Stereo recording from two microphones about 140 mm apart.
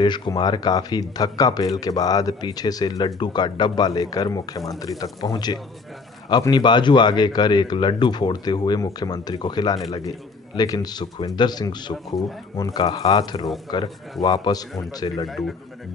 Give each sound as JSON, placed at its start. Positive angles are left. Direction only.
{"t": 0.0, "sound": "speech", "side_deg": 30}
{"t": 15.2, "sound": "a man's voice", "side_deg": 0}